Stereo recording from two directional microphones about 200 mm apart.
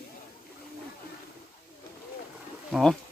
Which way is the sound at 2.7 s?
Centre (ahead or behind).